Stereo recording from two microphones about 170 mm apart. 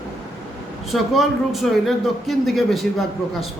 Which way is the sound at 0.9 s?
Centre (ahead or behind).